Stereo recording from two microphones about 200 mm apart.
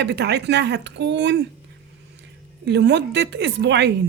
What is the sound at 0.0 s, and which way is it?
A woman's voice, 55° right (ahead or behind).